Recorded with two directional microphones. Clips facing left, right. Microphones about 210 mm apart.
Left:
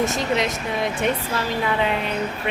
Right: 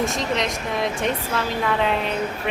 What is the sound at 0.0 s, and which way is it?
A woman's voice, centre (ahead or behind).